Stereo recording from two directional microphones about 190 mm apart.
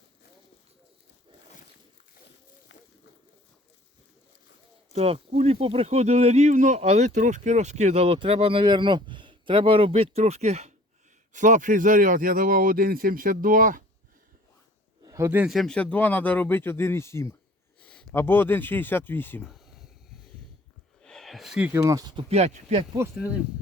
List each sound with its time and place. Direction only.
4.9 s speech: 30° right (ahead or behind)
15.0 s speech: 15° right (ahead or behind); by 19.5 s 10° left (ahead or behind)
21.0 s speech: 5° left (ahead or behind); by 22.2 s 20° right (ahead or behind)
22.3 s speech: 35° right (ahead or behind)